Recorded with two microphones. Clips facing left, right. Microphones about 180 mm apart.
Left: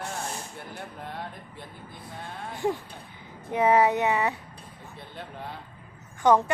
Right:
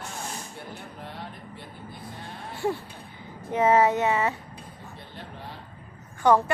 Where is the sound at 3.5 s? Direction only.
15° left (ahead or behind).